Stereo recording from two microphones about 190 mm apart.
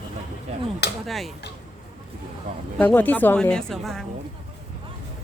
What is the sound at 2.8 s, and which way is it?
A woman's voice, 10° left (ahead or behind).